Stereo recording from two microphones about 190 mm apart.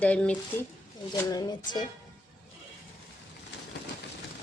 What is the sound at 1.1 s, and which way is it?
Speech, 20° left (ahead or behind).